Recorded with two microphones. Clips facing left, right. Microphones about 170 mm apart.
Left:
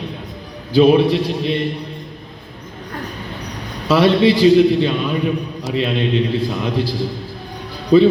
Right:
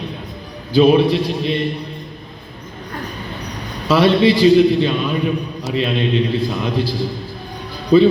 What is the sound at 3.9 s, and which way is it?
Speech, 55° left (ahead or behind).